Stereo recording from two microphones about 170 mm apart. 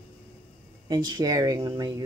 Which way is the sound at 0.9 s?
25° right (ahead or behind).